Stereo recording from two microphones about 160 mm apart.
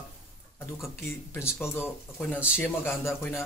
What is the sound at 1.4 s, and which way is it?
Speech, 15° left (ahead or behind).